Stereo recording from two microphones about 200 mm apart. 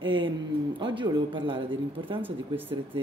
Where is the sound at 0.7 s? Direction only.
25° right (ahead or behind).